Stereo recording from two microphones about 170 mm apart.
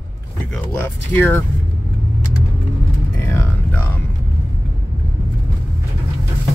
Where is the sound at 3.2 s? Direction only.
15° left (ahead or behind).